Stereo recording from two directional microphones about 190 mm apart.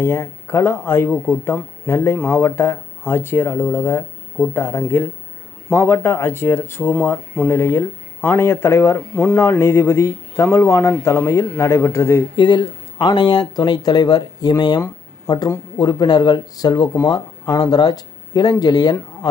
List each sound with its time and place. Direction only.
0.0 s speech: 15° left (ahead or behind)
12.4 s speech: 25° left (ahead or behind)